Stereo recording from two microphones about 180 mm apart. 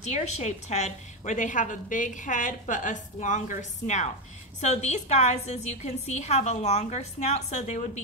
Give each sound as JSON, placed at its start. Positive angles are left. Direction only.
{"t": 0.0, "sound": "a woman's voice", "side_deg": 40}